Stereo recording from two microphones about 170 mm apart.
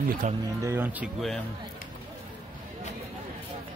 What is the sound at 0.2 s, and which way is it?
Speech, 45° right (ahead or behind).